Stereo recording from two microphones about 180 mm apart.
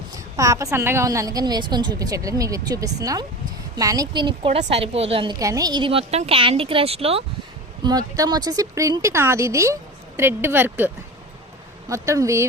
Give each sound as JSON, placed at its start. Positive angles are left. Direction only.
{"t": 0.3, "sound": "a woman's voice", "side_deg": -20}
{"t": 7.9, "sound": "speech", "side_deg": -20}